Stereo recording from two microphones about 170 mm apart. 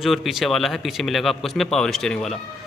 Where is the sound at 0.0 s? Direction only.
Centre (ahead or behind).